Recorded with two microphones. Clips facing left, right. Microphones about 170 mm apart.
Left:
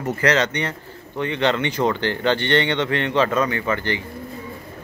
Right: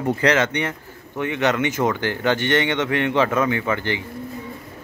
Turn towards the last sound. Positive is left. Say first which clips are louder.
# right 1 dB
turn(degrees=-15)  # may be behind; listen again after turning